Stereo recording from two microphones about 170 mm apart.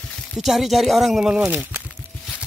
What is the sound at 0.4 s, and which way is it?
Speech, centre (ahead or behind).